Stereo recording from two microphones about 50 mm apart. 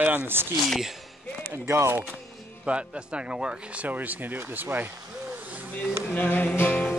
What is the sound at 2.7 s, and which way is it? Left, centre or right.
Speech, right.